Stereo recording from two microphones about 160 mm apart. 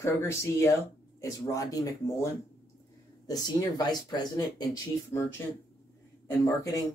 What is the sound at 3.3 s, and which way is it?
Speech, 25° left (ahead or behind).